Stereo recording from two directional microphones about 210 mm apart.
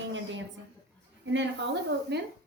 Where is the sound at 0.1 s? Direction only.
65° right (ahead or behind).